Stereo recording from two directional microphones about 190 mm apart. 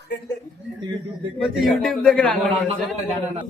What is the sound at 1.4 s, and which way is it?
Speech, centre (ahead or behind).